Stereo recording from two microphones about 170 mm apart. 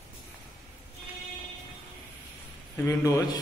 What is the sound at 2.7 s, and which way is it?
Speech, 15° left (ahead or behind).